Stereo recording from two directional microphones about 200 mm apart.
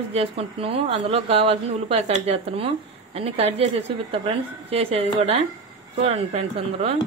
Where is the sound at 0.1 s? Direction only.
30° right (ahead or behind).